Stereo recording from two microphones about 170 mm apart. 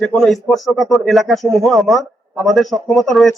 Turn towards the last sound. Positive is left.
turn(degrees=0)  # may be behind; listen again after turning